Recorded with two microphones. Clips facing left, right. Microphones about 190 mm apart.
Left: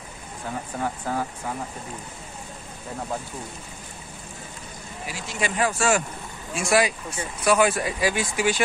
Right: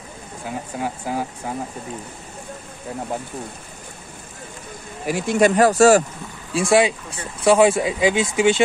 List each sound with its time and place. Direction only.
0.7 s speech: 15° right (ahead or behind)
5.0 s speech: 55° right (ahead or behind); by 8.5 s 25° right (ahead or behind)